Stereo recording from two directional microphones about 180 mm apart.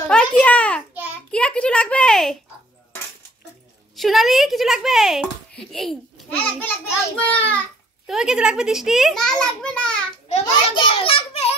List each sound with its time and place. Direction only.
0.1 s babbling: 5° left (ahead or behind)
1.3 s a sound: 5° left (ahead or behind)
3.9 s a child's voice: centre (ahead or behind)
8.1 s a child's voice: 5° right (ahead or behind)
10.4 s a child's voice: 30° left (ahead or behind)